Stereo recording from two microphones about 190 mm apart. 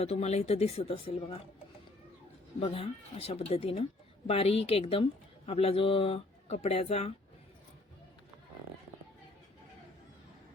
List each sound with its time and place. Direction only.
0.0 s speech: 35° left (ahead or behind)
2.6 s speech: 30° left (ahead or behind)